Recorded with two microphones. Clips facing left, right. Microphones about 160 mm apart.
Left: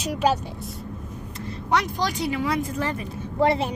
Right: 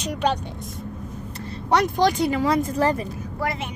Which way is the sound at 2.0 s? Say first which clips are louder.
Right 6 dB; 50° right (ahead or behind).